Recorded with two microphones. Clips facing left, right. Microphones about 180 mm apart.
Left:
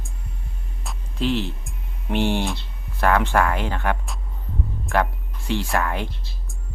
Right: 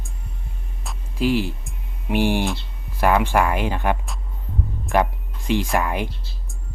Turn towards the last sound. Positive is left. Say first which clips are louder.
# right 2 dB
turn(degrees=-15)  # may be behind; listen again after turning